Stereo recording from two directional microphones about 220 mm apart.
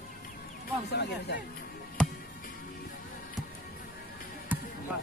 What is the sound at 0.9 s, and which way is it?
Speech, 50° left (ahead or behind).